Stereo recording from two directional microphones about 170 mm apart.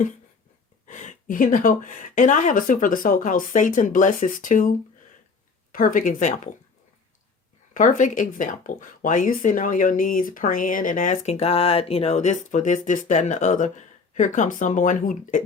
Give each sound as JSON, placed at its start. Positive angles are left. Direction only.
{"t": 0.9, "sound": "speech", "side_deg": 45}
{"t": 5.7, "sound": "speech", "side_deg": 55}
{"t": 7.7, "sound": "speech", "side_deg": 50}